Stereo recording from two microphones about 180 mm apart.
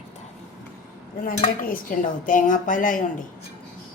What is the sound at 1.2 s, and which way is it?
Speech, 50° left (ahead or behind).